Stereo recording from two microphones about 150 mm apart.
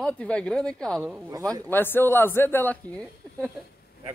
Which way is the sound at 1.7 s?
15° left (ahead or behind).